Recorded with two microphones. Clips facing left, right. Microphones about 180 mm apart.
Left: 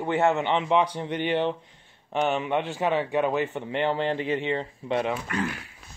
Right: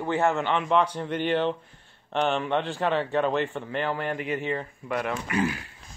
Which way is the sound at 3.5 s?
20° left (ahead or behind).